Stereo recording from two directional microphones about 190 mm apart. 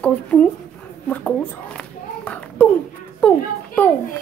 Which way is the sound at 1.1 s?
10° left (ahead or behind).